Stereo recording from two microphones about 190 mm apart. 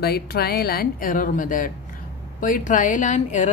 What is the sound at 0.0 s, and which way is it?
A woman's voice, 55° left (ahead or behind).